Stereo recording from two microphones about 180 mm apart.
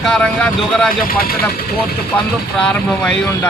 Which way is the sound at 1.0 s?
55° left (ahead or behind).